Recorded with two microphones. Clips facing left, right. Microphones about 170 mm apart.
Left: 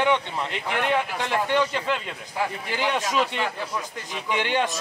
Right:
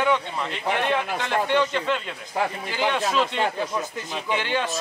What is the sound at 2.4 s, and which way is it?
Speech, 35° right (ahead or behind).